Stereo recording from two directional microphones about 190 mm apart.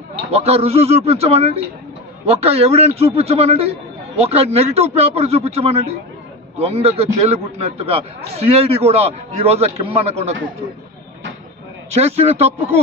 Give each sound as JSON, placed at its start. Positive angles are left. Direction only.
{"t": 0.3, "sound": "a man's voice", "side_deg": -30}
{"t": 11.9, "sound": "a man's voice", "side_deg": -35}